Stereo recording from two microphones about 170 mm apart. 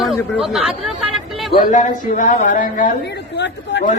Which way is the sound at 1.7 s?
50° left (ahead or behind).